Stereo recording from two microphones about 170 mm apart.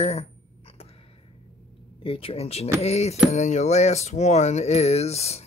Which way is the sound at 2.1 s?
35° left (ahead or behind).